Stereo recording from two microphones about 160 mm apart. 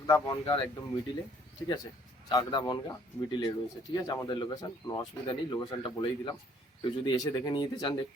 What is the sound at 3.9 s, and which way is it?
Speech, 25° left (ahead or behind).